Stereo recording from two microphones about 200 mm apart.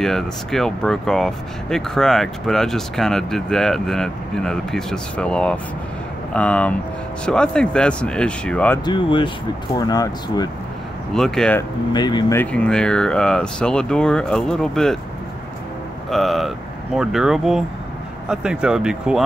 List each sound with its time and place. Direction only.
0.0 s speech: centre (ahead or behind)
8.8 s speech: 25° left (ahead or behind)
11.1 s speech: 5° left (ahead or behind)
11.9 s speech: 20° left (ahead or behind)
12.4 s speech: 5° left (ahead or behind)
16.1 s speech: centre (ahead or behind)